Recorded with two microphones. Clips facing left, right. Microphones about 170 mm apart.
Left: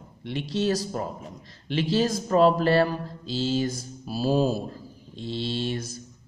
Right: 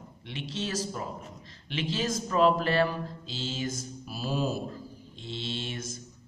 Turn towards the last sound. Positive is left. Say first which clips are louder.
# left 7 dB
turn(degrees=35)  # may be behind; listen again after turning